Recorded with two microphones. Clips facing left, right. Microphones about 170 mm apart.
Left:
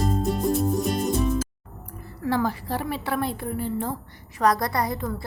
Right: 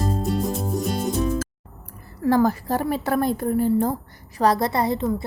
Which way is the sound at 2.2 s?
45° right (ahead or behind).